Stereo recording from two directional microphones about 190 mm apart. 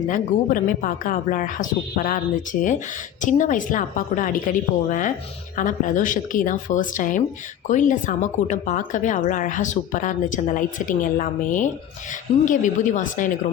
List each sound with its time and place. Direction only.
0.1 s a woman's voice: 45° left (ahead or behind)